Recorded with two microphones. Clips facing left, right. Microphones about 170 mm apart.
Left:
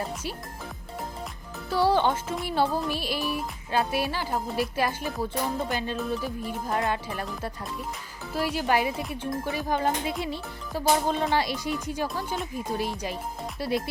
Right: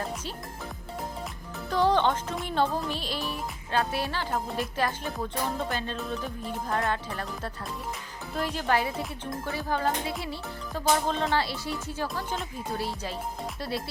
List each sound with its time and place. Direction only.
1.7 s speech: 10° left (ahead or behind)
4.4 s music: 5° left (ahead or behind)
5.7 s speech: 10° left (ahead or behind)